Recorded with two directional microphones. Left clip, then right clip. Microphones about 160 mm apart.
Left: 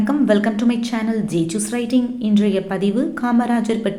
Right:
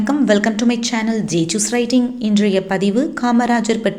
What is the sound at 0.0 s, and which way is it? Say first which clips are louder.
A woman's voice: right 2 dB; 25° right (ahead or behind).